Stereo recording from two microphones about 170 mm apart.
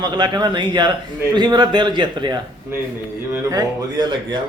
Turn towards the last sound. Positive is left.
turn(degrees=-25)  # may be behind; listen again after turning